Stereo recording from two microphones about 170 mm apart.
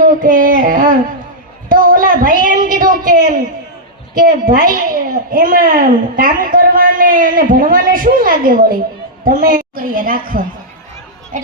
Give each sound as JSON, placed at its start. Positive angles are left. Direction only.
{"t": 0.0, "sound": "child singing", "side_deg": -55}
{"t": 1.7, "sound": "a sound", "side_deg": -55}
{"t": 4.1, "sound": "a child's voice", "side_deg": -55}